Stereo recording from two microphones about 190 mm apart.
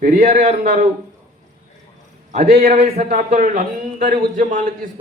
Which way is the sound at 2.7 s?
35° right (ahead or behind).